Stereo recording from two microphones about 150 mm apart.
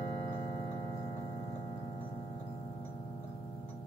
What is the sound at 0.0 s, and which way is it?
Music, 40° left (ahead or behind).